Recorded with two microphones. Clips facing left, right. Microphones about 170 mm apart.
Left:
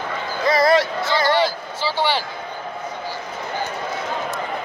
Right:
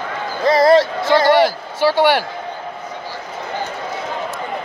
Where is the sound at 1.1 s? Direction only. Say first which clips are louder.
Right 7 dB; 65° right (ahead or behind).